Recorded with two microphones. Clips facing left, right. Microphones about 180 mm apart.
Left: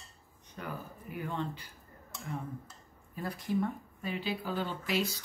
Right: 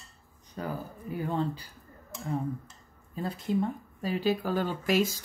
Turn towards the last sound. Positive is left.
turn(degrees=-45)  # may be behind; listen again after turning